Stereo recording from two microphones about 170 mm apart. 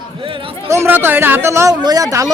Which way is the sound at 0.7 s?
15° right (ahead or behind).